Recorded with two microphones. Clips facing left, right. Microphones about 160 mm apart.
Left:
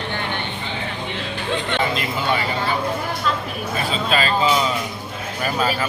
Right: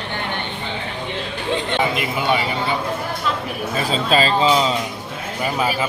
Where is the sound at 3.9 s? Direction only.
30° right (ahead or behind).